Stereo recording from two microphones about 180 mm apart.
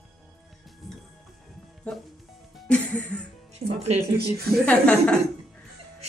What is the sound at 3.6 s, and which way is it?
Speech, 60° right (ahead or behind).